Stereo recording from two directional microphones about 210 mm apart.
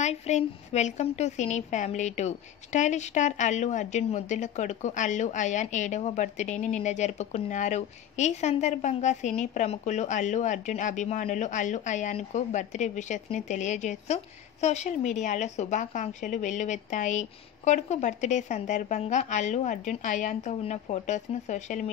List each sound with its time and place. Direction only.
0.0 s a woman's voice: 30° left (ahead or behind)